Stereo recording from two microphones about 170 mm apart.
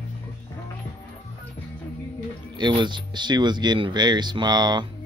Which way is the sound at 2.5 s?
25° right (ahead or behind).